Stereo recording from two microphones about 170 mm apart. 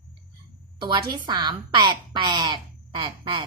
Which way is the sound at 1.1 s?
25° right (ahead or behind).